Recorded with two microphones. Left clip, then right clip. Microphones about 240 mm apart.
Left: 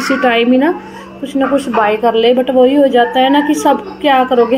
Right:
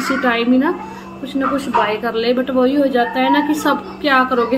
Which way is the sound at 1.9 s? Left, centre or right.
Centre.